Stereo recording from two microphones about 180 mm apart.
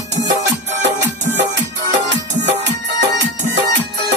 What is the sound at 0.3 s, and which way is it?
Music, 75° right (ahead or behind).